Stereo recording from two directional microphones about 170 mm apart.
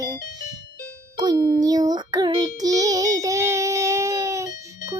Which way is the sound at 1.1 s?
25° right (ahead or behind).